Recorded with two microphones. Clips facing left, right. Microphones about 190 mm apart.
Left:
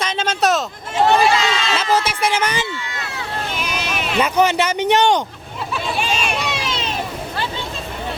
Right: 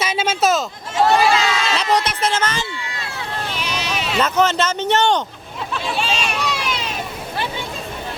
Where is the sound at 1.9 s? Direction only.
10° left (ahead or behind).